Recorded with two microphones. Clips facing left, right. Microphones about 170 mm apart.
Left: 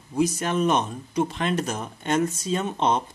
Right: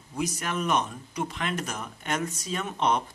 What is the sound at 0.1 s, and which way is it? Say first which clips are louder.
Speech: left 7 dB; 25° left (ahead or behind).